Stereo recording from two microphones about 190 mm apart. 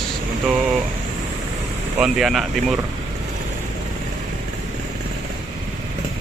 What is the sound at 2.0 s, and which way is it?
Speech, centre (ahead or behind).